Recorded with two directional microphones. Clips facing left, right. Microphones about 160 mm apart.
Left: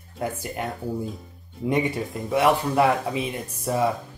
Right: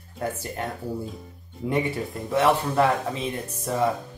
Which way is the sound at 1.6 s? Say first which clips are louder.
Left 2 dB; 15° left (ahead or behind).